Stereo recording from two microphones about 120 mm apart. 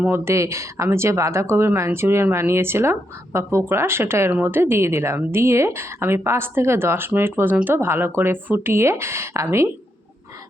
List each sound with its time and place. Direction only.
0.0 s speech: 20° right (ahead or behind)